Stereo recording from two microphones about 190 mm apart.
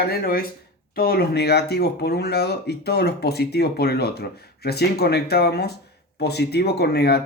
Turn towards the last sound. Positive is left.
turn(degrees=60)  # may be behind; listen again after turning